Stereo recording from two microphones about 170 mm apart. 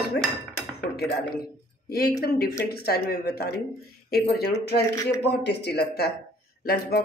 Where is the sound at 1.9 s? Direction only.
65° left (ahead or behind).